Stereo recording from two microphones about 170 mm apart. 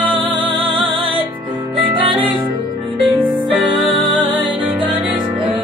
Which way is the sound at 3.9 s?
25° right (ahead or behind).